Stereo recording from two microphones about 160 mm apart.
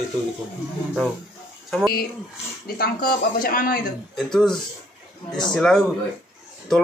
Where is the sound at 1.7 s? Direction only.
Centre (ahead or behind).